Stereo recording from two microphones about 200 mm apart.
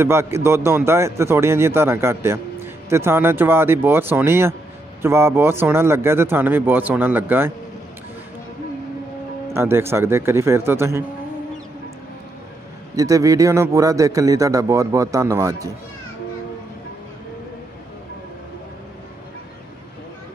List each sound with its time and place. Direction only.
0.0 s a man's voice: 10° right (ahead or behind)
9.5 s a man's voice: 10° right (ahead or behind)
12.9 s a man's voice: 15° right (ahead or behind)